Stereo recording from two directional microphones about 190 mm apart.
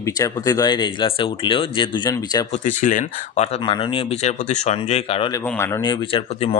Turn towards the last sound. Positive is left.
turn(degrees=30)  # may be behind; listen again after turning